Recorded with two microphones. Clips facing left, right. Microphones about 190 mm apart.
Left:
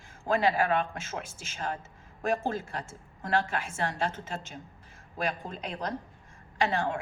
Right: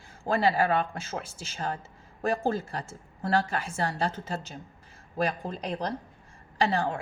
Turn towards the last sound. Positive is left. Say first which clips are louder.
# right 2 dB
turn(degrees=-35)  # may be behind; listen again after turning